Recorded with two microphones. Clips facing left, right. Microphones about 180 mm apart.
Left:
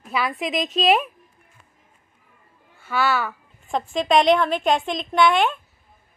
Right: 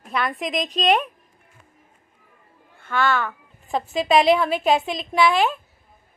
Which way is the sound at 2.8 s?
10° left (ahead or behind).